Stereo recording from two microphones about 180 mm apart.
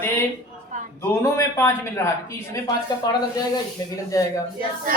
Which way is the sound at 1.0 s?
15° left (ahead or behind).